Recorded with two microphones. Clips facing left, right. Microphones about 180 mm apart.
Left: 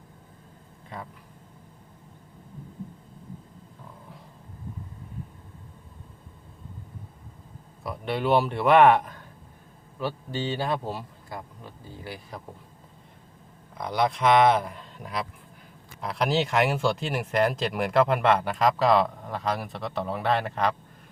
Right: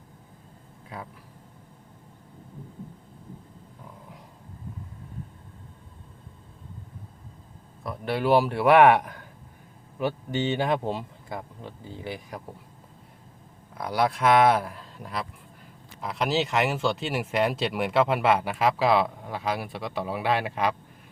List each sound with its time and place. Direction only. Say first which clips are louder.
7.9 s speech: right 1 dB; 5° right (ahead or behind); by 12.4 s 20° right (ahead or behind)
13.7 s speech: even; 5° right (ahead or behind)